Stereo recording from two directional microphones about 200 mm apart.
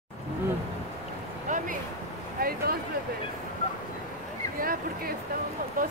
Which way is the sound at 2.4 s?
50° right (ahead or behind).